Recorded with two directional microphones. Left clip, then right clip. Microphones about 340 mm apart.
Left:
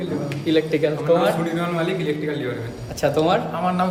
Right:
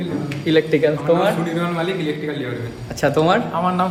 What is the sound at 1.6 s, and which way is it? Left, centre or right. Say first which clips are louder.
Speech: right 1 dB; centre.